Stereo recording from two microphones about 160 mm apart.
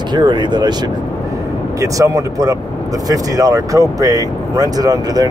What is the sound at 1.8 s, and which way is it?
Speech, 20° right (ahead or behind).